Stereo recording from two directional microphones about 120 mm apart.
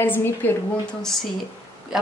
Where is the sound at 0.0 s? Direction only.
15° left (ahead or behind).